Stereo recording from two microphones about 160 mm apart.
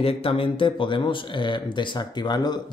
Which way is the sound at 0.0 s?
35° left (ahead or behind).